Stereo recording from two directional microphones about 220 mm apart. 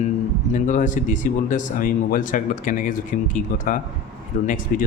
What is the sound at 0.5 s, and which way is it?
A man's voice, 35° left (ahead or behind).